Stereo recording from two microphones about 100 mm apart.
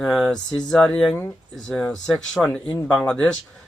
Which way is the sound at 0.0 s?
5° left (ahead or behind).